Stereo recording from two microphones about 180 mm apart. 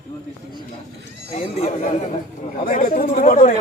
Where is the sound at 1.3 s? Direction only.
35° left (ahead or behind).